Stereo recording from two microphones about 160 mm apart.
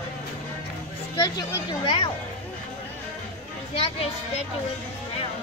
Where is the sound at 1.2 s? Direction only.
25° left (ahead or behind).